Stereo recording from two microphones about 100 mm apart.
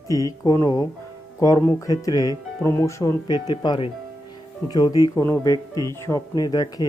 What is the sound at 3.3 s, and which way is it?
Speech, 45° left (ahead or behind).